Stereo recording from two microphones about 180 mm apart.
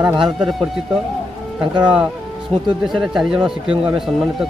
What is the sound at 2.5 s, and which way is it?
Speech, 35° right (ahead or behind).